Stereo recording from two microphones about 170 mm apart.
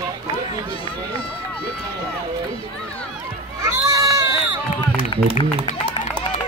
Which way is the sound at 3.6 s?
20° right (ahead or behind).